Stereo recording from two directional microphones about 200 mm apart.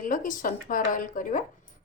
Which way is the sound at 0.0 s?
40° left (ahead or behind).